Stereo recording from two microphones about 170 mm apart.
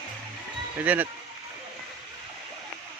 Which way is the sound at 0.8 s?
10° right (ahead or behind).